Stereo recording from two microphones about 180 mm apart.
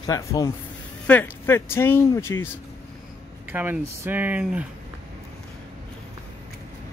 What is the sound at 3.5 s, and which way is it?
Speech, 10° right (ahead or behind).